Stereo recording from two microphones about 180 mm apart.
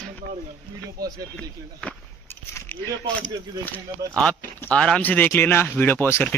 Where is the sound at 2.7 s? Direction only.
10° left (ahead or behind).